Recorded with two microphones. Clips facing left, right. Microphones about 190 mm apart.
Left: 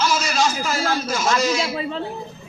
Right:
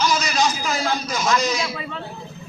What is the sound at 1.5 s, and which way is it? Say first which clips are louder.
Speech: left 3 dB; 30° left (ahead or behind).